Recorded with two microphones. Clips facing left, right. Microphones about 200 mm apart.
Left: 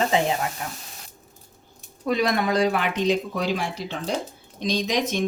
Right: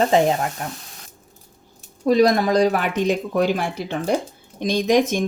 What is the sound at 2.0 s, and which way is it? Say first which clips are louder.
Speech: right 7 dB; 40° right (ahead or behind).